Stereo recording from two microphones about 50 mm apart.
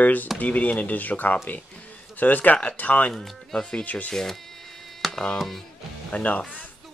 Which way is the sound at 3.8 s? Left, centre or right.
Left.